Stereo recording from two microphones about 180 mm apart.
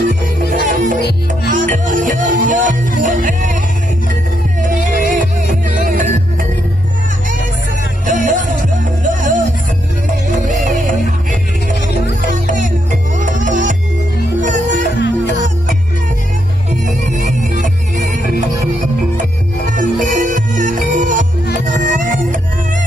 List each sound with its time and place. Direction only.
0.5 s music: 45° right (ahead or behind)
4.6 s music: 45° right (ahead or behind)
8.1 s music: 45° right (ahead or behind)
12.2 s music: 45° right (ahead or behind)
17.0 s music: 45° right (ahead or behind)
19.1 s music: 45° right (ahead or behind)